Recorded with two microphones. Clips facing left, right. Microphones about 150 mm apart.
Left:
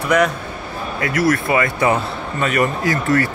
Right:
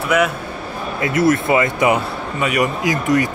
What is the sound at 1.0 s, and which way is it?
Speech, 25° right (ahead or behind).